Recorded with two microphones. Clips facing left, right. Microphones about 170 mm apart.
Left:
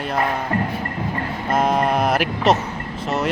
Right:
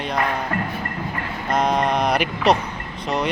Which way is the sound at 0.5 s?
25° left (ahead or behind).